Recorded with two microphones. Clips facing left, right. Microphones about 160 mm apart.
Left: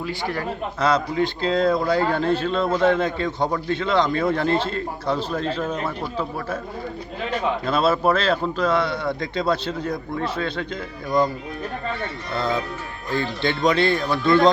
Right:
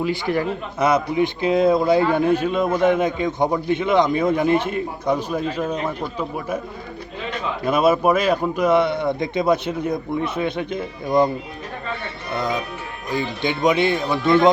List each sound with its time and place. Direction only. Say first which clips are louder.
0.0 s a man's voice: right 5 dB; 20° right (ahead or behind)
7.6 s a man's voice: right 5 dB; 15° right (ahead or behind)
12.3 s a man's voice: right 1 dB; 15° right (ahead or behind)